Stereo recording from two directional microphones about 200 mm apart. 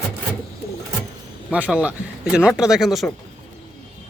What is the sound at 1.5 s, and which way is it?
Speech, 5° right (ahead or behind).